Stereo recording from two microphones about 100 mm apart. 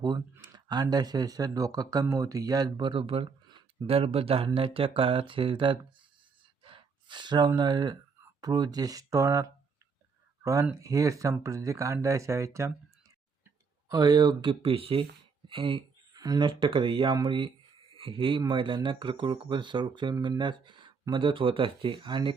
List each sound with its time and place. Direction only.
0.4 s speech: 45° right (ahead or behind)
3.9 s speech: 75° right (ahead or behind); by 12.7 s 30° right (ahead or behind)
13.9 s speech: 40° right (ahead or behind)
14.6 s speech: 65° right (ahead or behind)
15.4 s a sound: 55° right (ahead or behind)
16.5 s speech: 55° right (ahead or behind)